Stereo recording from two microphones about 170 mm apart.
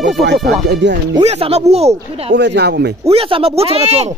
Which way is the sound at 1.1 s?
35° right (ahead or behind).